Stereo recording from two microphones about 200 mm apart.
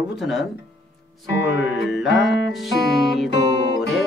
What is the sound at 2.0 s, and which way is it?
Music, 60° left (ahead or behind).